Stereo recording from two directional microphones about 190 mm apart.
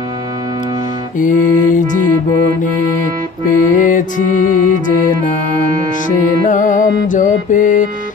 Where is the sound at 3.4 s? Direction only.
45° left (ahead or behind).